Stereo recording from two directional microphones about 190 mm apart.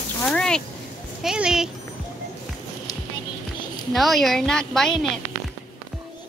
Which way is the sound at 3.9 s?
Centre (ahead or behind).